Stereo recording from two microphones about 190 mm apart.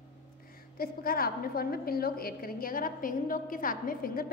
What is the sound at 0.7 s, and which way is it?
A woman's voice, 50° left (ahead or behind).